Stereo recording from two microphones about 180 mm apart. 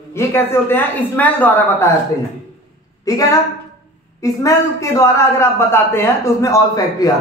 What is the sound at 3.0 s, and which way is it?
A woman's voice, 20° left (ahead or behind).